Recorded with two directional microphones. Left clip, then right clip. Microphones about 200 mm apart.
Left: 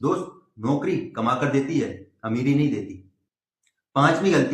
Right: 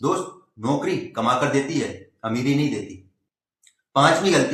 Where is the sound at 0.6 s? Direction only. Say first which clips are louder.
Right 1 dB; 15° right (ahead or behind).